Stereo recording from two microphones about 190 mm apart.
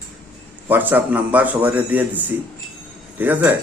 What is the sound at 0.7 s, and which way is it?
Speech, 10° right (ahead or behind).